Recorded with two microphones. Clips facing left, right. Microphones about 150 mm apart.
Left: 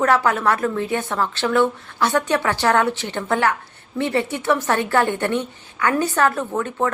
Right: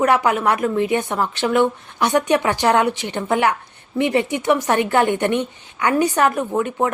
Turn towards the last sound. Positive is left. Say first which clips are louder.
# right 2 dB
turn(degrees=-15)  # may be behind; listen again after turning